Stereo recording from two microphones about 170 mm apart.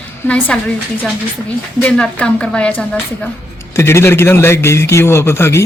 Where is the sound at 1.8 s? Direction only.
5° left (ahead or behind).